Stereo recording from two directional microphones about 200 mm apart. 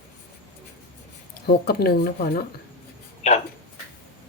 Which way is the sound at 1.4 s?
50° left (ahead or behind).